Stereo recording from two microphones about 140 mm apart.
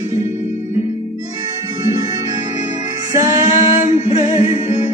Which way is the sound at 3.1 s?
25° right (ahead or behind).